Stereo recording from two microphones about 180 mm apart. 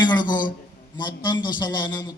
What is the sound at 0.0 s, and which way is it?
A woman's voice, 25° left (ahead or behind).